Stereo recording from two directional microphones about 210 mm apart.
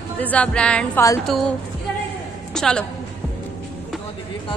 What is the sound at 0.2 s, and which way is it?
A woman's voice, 5° left (ahead or behind).